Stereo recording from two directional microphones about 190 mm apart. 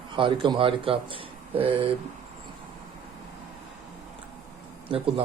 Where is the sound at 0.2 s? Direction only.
25° right (ahead or behind).